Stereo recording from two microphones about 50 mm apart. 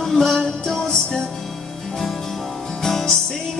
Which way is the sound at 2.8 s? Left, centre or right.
Centre.